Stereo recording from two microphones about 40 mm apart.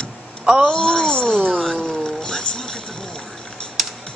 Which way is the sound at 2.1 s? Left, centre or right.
Centre.